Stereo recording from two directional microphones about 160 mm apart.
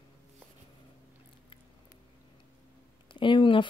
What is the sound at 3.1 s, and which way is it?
Speech, 30° left (ahead or behind).